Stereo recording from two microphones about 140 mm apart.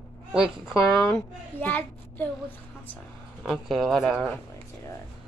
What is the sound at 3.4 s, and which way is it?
Speech, centre (ahead or behind).